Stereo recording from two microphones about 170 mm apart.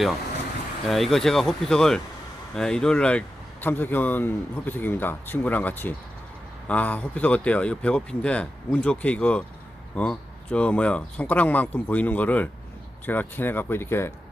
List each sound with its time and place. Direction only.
0.9 s speech: centre (ahead or behind)